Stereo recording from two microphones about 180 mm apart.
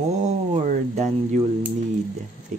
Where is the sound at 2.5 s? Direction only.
40° right (ahead or behind).